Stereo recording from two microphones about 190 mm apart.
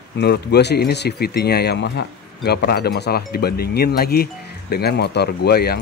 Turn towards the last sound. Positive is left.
turn(degrees=55)  # may be behind; listen again after turning